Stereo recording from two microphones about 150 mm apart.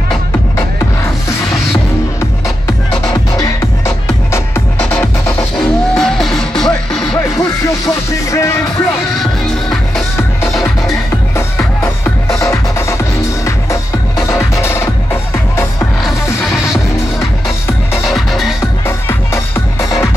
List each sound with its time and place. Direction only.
3.3 s music: 20° left (ahead or behind)
4.7 s music: 5° left (ahead or behind)
8.3 s music: 20° left (ahead or behind)
9.2 s music: centre (ahead or behind)
11.3 s music: 20° left (ahead or behind)
18.0 s music: centre (ahead or behind)
18.9 s music: 15° left (ahead or behind)